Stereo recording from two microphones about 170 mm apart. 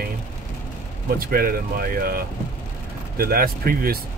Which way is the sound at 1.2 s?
60° right (ahead or behind).